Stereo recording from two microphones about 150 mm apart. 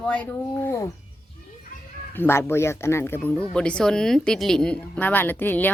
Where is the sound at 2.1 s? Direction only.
15° left (ahead or behind).